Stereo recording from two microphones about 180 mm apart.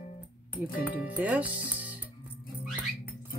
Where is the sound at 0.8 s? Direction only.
10° right (ahead or behind).